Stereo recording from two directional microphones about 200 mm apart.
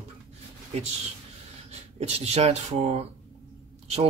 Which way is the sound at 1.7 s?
30° right (ahead or behind).